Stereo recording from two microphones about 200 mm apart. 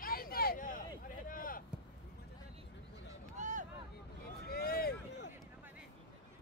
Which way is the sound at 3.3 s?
35° right (ahead or behind).